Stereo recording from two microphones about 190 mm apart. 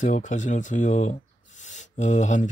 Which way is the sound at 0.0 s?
40° left (ahead or behind).